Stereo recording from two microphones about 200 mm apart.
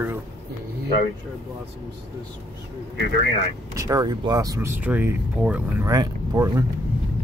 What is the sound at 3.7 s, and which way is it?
Speech, 15° right (ahead or behind).